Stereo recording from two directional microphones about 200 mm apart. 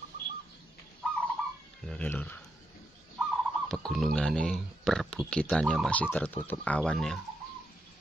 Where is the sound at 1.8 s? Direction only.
5° left (ahead or behind).